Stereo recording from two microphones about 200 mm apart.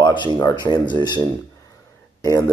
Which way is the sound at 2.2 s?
15° left (ahead or behind).